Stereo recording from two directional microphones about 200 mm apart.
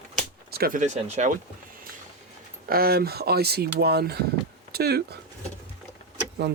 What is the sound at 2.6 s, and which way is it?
Speech, 50° right (ahead or behind).